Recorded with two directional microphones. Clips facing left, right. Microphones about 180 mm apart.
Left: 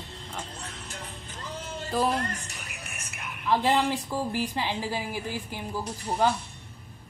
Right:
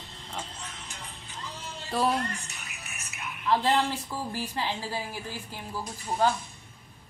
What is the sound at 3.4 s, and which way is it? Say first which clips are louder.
A woman's voice: left 1 dB; 15° left (ahead or behind).